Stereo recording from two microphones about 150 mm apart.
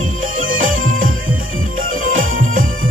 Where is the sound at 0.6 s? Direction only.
65° right (ahead or behind).